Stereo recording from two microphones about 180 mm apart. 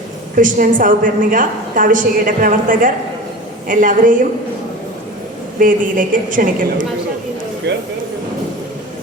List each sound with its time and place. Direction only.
0.3 s a woman's voice: 50° right (ahead or behind)
5.5 s a woman's voice: 50° right (ahead or behind)
7.7 s speech: 75° right (ahead or behind)